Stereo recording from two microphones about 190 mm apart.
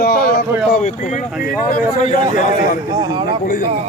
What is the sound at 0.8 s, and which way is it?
Speech, 40° left (ahead or behind).